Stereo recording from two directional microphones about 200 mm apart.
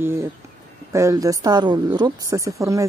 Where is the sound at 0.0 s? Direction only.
10° right (ahead or behind).